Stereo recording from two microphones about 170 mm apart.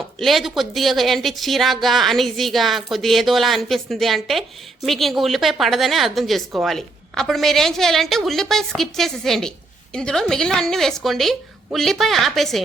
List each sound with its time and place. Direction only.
0.2 s a woman's voice: centre (ahead or behind)